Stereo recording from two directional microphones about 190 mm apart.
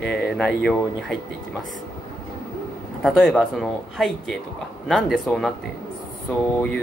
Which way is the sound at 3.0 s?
5° left (ahead or behind).